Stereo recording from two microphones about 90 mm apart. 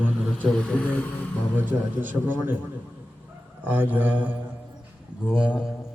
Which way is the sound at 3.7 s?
20° right (ahead or behind).